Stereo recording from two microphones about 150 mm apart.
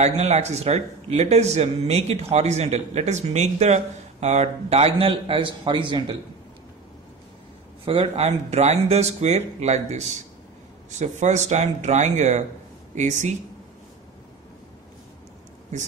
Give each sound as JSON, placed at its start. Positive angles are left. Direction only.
{"t": 0.0, "sound": "a man's voice", "side_deg": -45}
{"t": 7.8, "sound": "a man's voice", "side_deg": -40}